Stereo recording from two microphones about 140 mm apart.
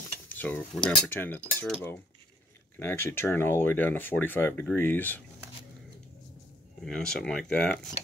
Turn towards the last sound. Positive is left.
turn(degrees=5)  # may be behind; listen again after turning